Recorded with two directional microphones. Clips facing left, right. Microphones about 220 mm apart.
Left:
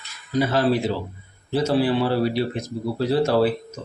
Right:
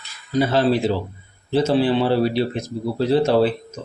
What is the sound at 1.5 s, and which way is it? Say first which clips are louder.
A man's voice: right 3 dB; 25° right (ahead or behind).